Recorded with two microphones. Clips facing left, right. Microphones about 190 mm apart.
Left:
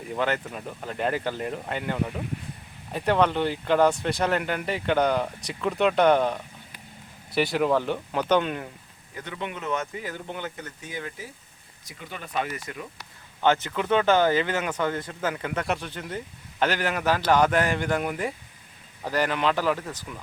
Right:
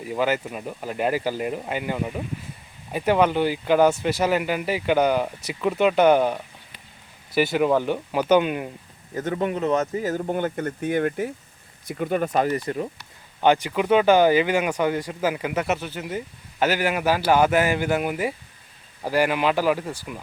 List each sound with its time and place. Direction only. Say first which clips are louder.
0.0 s speech: right 3 dB; 5° right (ahead or behind)
9.1 s speech: right 10 dB; 45° right (ahead or behind)
13.4 s speech: right 4 dB; 15° right (ahead or behind)